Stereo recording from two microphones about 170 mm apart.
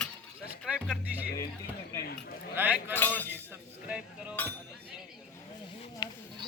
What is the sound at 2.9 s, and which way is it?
Cutlery, 10° left (ahead or behind).